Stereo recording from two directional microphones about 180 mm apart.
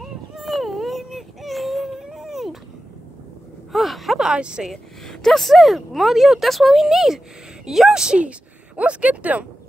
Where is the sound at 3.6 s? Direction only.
Centre (ahead or behind).